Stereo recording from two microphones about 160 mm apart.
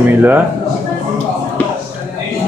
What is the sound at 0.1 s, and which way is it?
Speech, 10° right (ahead or behind).